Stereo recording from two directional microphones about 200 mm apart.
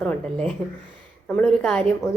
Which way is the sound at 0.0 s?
5° left (ahead or behind).